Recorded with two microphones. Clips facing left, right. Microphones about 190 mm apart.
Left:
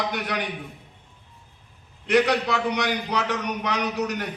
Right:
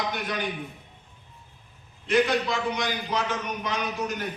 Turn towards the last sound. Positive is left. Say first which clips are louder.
# left 3 dB
turn(degrees=70)  # may be behind; listen again after turning